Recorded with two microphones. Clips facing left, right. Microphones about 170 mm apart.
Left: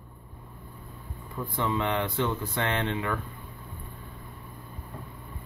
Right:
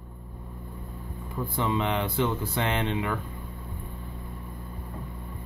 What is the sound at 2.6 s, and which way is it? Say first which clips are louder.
Speech: right 1 dB; 20° right (ahead or behind).